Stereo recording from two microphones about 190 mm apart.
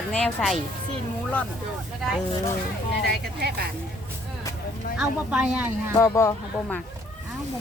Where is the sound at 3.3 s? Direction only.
55° right (ahead or behind).